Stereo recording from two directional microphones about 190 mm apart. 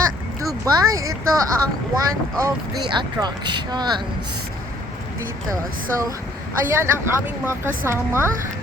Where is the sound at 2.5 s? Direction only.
20° right (ahead or behind).